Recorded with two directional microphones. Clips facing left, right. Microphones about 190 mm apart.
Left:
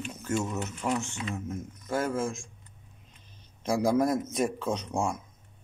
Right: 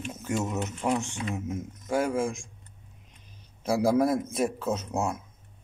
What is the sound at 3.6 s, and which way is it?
Speech, 5° right (ahead or behind).